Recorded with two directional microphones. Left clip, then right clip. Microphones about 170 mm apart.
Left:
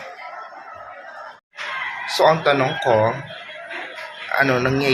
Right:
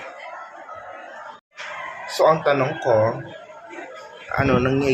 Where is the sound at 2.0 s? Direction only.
5° right (ahead or behind).